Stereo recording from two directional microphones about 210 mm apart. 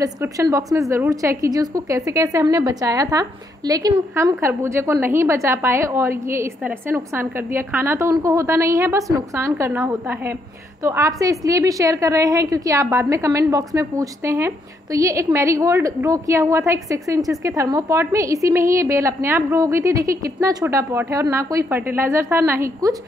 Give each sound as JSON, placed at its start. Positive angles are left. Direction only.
{"t": 0.0, "sound": "a woman's voice", "side_deg": -15}